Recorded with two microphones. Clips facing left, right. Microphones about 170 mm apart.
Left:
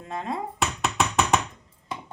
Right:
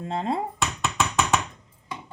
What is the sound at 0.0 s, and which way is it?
Speech, 30° right (ahead or behind).